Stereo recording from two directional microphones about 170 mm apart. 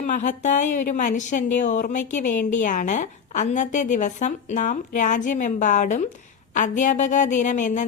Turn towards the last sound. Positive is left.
turn(degrees=45)  # may be behind; listen again after turning